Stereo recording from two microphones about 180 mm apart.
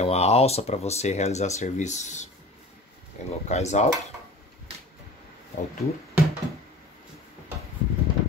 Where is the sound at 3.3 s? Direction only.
40° left (ahead or behind).